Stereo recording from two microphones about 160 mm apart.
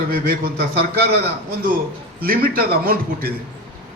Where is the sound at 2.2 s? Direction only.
65° right (ahead or behind).